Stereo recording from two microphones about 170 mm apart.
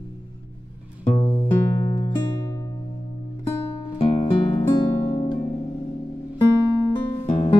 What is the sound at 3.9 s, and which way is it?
Music, 35° left (ahead or behind).